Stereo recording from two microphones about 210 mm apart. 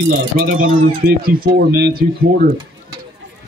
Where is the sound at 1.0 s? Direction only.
45° right (ahead or behind).